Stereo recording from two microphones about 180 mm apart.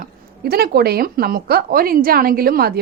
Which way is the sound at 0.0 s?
60° right (ahead or behind).